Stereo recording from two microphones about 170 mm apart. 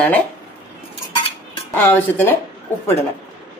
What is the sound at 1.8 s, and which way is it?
Speech, 10° left (ahead or behind).